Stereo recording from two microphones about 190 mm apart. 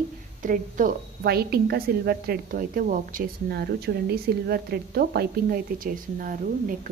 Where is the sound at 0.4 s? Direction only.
45° right (ahead or behind).